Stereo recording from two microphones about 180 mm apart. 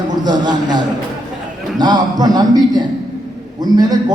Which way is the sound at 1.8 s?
20° right (ahead or behind).